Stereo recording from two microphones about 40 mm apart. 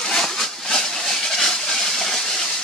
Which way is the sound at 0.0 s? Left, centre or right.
Centre.